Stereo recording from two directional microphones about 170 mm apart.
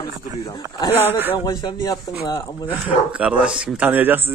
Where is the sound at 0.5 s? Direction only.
25° left (ahead or behind).